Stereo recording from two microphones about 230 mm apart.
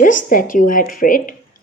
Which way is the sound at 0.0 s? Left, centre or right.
Left.